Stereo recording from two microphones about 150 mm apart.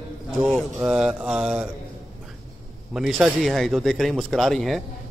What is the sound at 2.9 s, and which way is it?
A man's voice, centre (ahead or behind).